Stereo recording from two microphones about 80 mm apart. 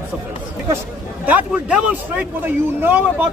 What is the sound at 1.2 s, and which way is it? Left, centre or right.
A man's voice, centre.